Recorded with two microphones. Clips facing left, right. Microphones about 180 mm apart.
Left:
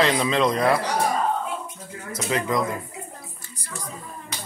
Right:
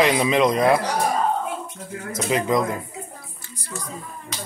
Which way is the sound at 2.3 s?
20° right (ahead or behind).